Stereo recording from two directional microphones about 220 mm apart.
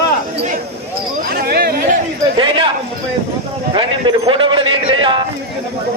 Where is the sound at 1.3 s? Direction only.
45° right (ahead or behind).